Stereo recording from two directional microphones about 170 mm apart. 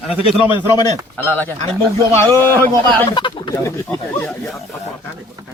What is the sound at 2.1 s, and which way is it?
Speech, 15° left (ahead or behind).